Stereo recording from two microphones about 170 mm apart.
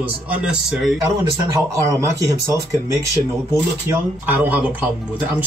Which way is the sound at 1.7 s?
20° right (ahead or behind).